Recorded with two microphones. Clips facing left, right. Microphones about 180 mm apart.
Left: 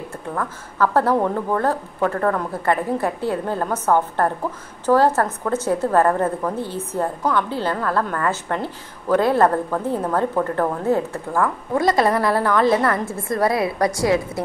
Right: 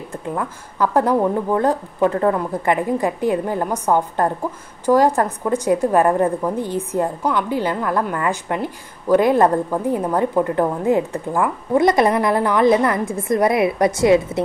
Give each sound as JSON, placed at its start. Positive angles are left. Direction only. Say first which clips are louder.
{"t": 0.3, "sound": "a woman's voice", "louder": "right 2 dB", "side_deg": -15}